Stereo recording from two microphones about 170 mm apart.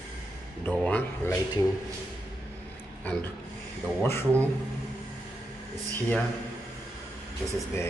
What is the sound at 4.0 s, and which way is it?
Speech, 15° left (ahead or behind).